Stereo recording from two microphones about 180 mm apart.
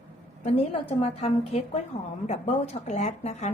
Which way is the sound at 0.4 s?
30° left (ahead or behind).